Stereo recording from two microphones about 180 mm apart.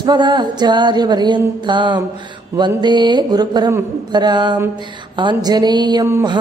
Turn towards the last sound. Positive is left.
turn(degrees=-20)  # may be behind; listen again after turning